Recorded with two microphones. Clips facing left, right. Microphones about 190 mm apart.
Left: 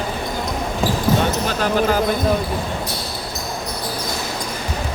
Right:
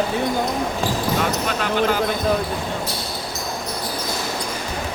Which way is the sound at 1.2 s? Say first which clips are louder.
Left 2 dB; 35° left (ahead or behind).